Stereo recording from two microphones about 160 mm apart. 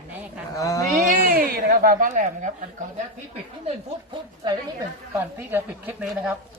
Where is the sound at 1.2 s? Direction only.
65° right (ahead or behind).